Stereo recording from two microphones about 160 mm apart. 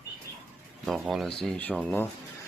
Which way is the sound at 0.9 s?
Centre (ahead or behind).